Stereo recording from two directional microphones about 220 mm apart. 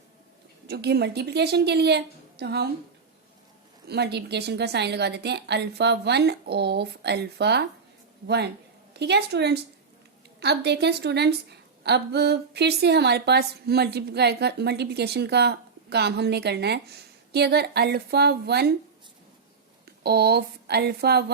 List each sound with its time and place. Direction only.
0.7 s a woman's voice: 50° right (ahead or behind)
3.8 s a woman's voice: 50° right (ahead or behind)
8.9 s a woman's voice: 50° right (ahead or behind)
20.0 s a woman's voice: 45° right (ahead or behind)